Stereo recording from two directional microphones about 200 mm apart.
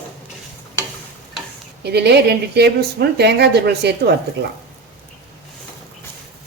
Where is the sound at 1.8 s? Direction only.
55° right (ahead or behind).